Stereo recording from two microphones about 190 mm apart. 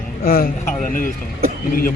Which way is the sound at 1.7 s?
45° left (ahead or behind).